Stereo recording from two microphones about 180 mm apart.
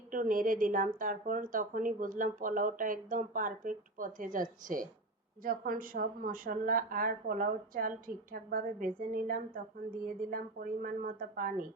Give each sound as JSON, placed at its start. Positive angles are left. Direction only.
{"t": 0.1, "sound": "speech", "side_deg": -50}